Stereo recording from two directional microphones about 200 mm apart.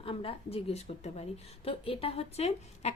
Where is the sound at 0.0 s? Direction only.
25° left (ahead or behind).